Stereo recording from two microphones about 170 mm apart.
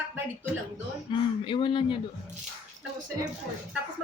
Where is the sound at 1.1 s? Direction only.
25° left (ahead or behind).